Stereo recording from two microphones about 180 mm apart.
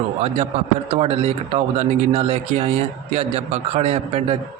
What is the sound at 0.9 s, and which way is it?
Speech, 35° right (ahead or behind).